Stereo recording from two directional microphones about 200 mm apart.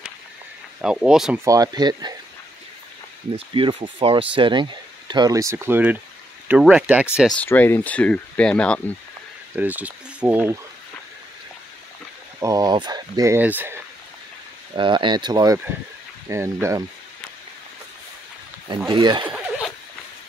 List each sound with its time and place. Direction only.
0.7 s speech: 5° right (ahead or behind)
1.4 s speech: 15° right (ahead or behind)
3.3 s speech: 25° right (ahead or behind); by 8.9 s 5° left (ahead or behind)
9.6 s speech: 10° right (ahead or behind)
12.4 s speech: 15° right (ahead or behind)
14.8 s speech: 25° right (ahead or behind)
18.9 s speech: 25° right (ahead or behind)